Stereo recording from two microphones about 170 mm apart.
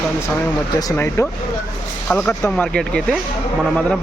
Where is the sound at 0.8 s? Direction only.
15° left (ahead or behind).